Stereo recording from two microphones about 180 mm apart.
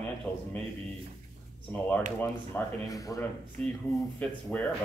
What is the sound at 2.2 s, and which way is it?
Speech, 15° left (ahead or behind).